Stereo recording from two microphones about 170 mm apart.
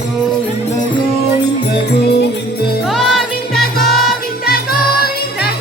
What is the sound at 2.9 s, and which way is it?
Music, centre (ahead or behind).